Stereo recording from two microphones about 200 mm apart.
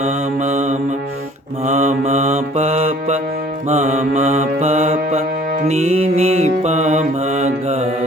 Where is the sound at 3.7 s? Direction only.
35° right (ahead or behind).